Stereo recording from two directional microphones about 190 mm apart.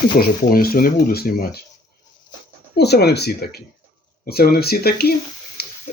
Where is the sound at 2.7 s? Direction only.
60° left (ahead or behind).